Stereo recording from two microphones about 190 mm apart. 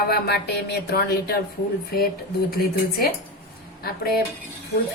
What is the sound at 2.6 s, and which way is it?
Speech, 50° left (ahead or behind).